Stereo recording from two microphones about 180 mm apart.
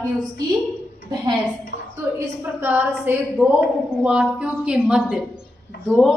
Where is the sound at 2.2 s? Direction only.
10° right (ahead or behind).